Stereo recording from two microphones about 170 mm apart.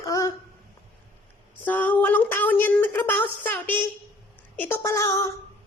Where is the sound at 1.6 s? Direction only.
10° left (ahead or behind).